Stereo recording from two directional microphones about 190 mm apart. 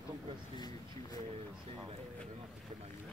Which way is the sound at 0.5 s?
20° left (ahead or behind).